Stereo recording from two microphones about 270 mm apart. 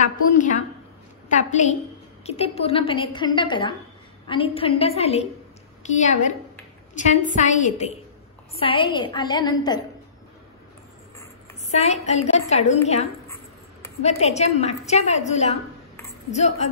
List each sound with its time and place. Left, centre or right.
0.0 s a woman's voice: left
11.7 s a woman's voice: left